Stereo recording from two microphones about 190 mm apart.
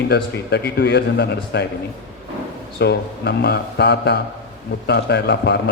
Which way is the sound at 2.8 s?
60° left (ahead or behind).